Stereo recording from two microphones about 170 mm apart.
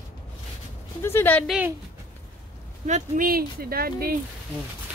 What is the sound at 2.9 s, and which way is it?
Speech, 50° right (ahead or behind).